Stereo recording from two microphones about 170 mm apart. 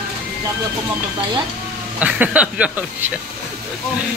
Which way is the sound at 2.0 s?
10° right (ahead or behind).